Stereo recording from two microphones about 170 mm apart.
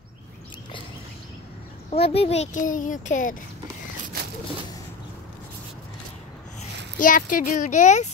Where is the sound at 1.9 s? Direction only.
35° left (ahead or behind).